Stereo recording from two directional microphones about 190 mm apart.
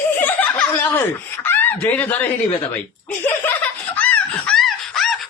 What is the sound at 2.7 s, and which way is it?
Chuckle, 10° left (ahead or behind).